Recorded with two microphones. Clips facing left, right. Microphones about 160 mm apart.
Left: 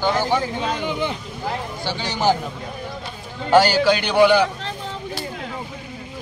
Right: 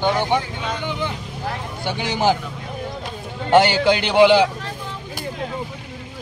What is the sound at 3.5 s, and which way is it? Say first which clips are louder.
Speech: even; 20° right (ahead or behind).